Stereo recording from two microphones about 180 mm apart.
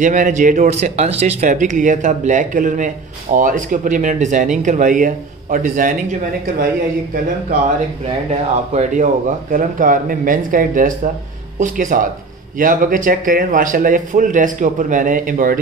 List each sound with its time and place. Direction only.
0.0 s a man's voice: 45° right (ahead or behind)
8.3 s a man's voice: 40° right (ahead or behind)